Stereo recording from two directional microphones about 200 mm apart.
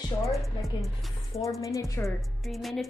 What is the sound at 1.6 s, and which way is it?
Speech, 15° left (ahead or behind).